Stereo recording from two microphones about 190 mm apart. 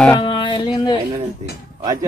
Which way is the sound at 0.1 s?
25° left (ahead or behind).